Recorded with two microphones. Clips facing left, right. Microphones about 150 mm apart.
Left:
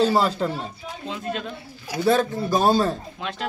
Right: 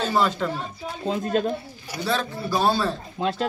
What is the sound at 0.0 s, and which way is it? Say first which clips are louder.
Speech: left 3 dB; 35° left (ahead or behind).